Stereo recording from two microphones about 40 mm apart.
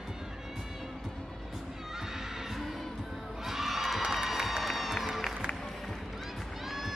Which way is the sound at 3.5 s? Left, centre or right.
Centre.